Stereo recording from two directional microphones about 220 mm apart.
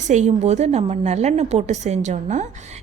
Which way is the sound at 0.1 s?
30° right (ahead or behind).